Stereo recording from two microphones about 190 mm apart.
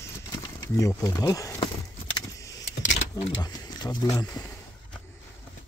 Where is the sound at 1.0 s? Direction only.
15° left (ahead or behind).